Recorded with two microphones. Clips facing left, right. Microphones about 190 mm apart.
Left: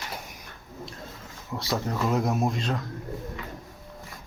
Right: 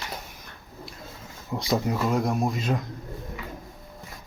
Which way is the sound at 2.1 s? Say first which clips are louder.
Even; centre (ahead or behind).